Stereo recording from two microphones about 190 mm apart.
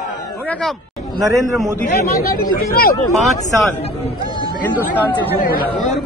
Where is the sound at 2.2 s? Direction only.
50° left (ahead or behind).